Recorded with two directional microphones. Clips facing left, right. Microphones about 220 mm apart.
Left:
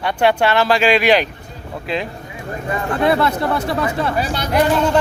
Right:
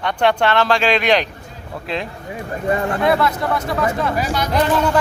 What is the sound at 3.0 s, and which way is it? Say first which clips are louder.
Speech: left 1 dB; 30° left (ahead or behind).